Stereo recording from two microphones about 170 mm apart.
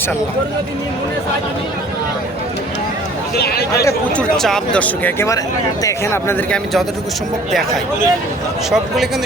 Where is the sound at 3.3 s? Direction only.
65° left (ahead or behind).